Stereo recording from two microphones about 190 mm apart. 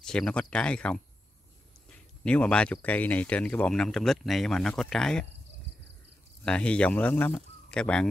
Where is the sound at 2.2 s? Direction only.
5° left (ahead or behind).